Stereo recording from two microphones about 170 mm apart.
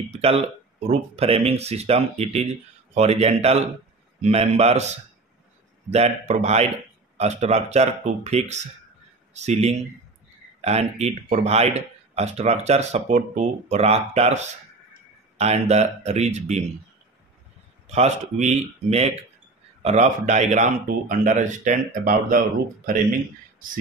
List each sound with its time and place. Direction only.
0.1 s speech: 35° right (ahead or behind)
17.8 s speech: 40° right (ahead or behind)